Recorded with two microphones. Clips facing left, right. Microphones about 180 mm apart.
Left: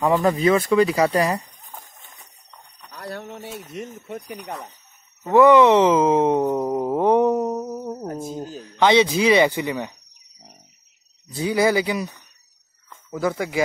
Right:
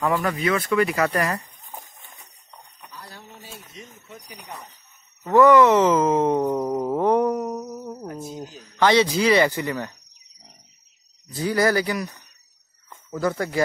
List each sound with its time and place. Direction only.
0.0 s speech: 25° left (ahead or behind)
2.9 s speech: 65° left (ahead or behind)
5.2 s speech: 15° left (ahead or behind)
8.0 s a sound: 45° left (ahead or behind)
8.5 s speech: 20° left (ahead or behind)
11.3 s speech: 20° left (ahead or behind)